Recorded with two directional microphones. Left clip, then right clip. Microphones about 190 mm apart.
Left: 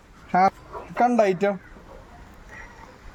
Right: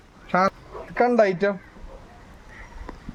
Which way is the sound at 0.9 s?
5° right (ahead or behind).